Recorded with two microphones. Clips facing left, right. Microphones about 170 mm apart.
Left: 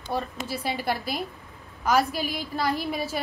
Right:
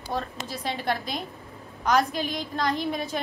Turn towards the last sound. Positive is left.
turn(degrees=5)  # may be behind; listen again after turning